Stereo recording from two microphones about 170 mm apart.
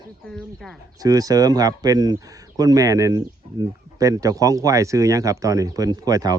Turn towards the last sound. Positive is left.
turn(degrees=-20)  # may be behind; listen again after turning